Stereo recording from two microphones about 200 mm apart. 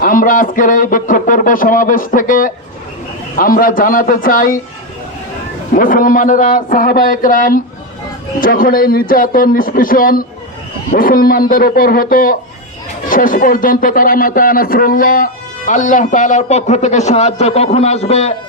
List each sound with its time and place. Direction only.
0.0 s speech: 45° left (ahead or behind)
5.7 s speech: 45° left (ahead or behind)